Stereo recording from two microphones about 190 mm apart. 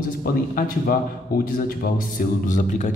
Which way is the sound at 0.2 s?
50° left (ahead or behind).